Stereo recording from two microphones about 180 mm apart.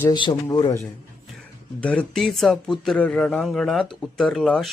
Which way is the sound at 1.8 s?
5° left (ahead or behind).